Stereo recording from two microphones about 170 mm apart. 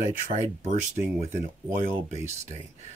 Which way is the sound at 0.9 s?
15° right (ahead or behind).